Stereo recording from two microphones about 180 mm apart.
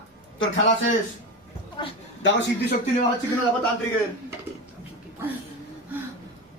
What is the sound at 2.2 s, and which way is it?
Speech, 75° left (ahead or behind).